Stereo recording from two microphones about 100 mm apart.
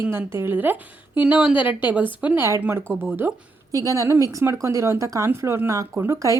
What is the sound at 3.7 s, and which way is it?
Speech, 35° right (ahead or behind).